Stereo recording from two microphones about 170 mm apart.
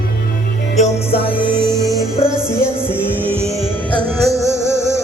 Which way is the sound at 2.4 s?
15° left (ahead or behind).